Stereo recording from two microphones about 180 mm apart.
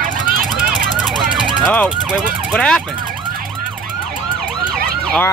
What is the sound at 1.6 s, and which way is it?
Emergency vehicle, 5° left (ahead or behind).